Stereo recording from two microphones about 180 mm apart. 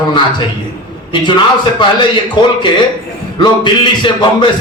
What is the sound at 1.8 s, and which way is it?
Speech, 25° left (ahead or behind).